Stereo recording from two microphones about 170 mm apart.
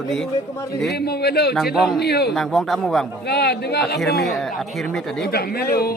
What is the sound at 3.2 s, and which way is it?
Speech, 70° left (ahead or behind).